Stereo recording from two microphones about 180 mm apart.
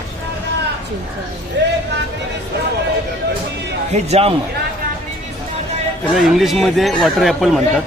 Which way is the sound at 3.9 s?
35° right (ahead or behind).